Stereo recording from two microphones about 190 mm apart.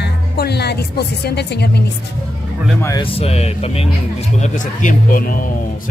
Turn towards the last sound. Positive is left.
turn(degrees=45)  # may be behind; listen again after turning